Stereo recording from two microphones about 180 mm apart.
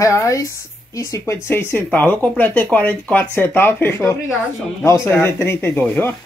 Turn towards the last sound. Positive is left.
turn(degrees=10)  # may be behind; listen again after turning